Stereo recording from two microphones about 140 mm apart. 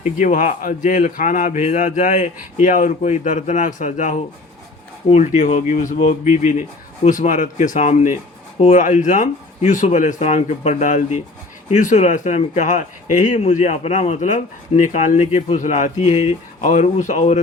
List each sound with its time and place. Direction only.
0.0 s speech: 65° left (ahead or behind)